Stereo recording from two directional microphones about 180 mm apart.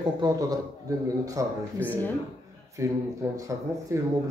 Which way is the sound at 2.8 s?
15° right (ahead or behind).